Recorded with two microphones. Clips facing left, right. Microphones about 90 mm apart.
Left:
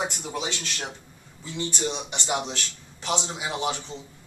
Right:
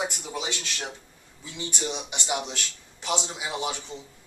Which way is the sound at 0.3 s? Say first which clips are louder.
Left 1 dB; 10° right (ahead or behind).